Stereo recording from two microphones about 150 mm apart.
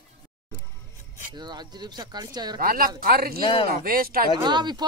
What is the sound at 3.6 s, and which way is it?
Speech, 80° right.